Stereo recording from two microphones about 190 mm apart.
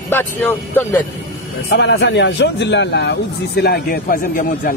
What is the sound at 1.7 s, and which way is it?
Speech, 65° left (ahead or behind).